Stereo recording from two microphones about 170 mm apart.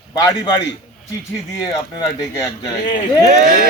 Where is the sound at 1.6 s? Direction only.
25° left (ahead or behind).